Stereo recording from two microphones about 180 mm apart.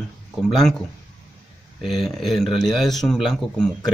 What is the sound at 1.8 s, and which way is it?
A man's voice, centre (ahead or behind).